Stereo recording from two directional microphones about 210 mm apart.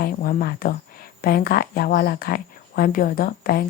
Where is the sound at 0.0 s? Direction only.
45° left (ahead or behind).